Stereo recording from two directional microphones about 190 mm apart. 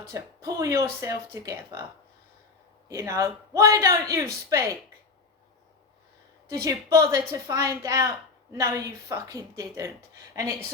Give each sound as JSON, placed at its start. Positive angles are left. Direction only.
{"t": 0.1, "sound": "speech", "side_deg": -15}
{"t": 2.9, "sound": "speech", "side_deg": -15}
{"t": 6.5, "sound": "speech", "side_deg": -15}